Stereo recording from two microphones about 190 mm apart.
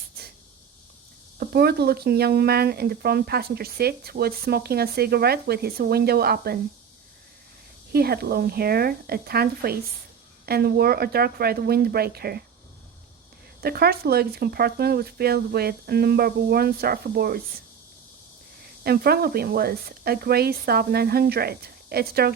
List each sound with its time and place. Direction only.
1.4 s speech: 55° right (ahead or behind)
7.9 s a woman's voice: 55° right (ahead or behind)
13.6 s speech: 55° right (ahead or behind)
18.8 s speech: 55° right (ahead or behind)